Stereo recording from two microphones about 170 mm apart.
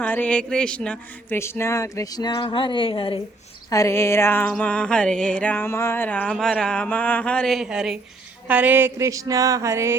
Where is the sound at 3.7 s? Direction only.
20° left (ahead or behind); by 7.9 s 5° right (ahead or behind).